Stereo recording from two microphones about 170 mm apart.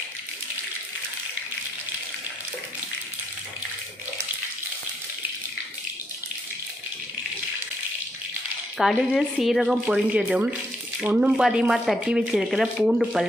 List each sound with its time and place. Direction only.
8.7 s speech: centre (ahead or behind)